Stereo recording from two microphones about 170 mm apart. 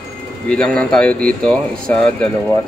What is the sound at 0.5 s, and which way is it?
Speech, 5° left (ahead or behind).